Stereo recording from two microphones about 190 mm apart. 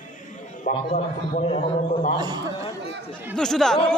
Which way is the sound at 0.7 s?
45° left (ahead or behind).